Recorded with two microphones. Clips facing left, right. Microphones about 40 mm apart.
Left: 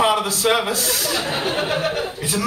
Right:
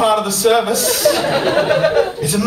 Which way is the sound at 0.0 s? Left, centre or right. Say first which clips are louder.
Right 4 dB; centre.